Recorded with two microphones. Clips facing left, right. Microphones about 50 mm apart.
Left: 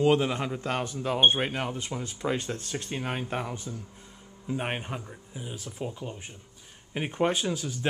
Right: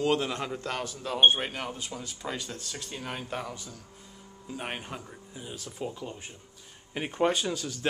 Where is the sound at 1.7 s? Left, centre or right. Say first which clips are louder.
Left 4 dB; left.